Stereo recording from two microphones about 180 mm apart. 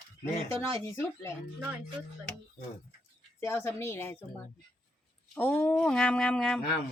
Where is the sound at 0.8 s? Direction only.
15° left (ahead or behind).